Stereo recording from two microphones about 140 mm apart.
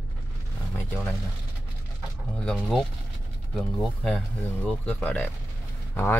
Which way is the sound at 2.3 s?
5° left (ahead or behind).